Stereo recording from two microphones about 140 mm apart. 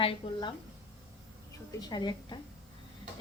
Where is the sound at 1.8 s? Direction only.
30° left (ahead or behind).